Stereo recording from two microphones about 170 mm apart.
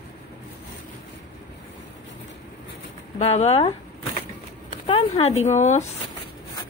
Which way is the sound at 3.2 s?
40° left (ahead or behind).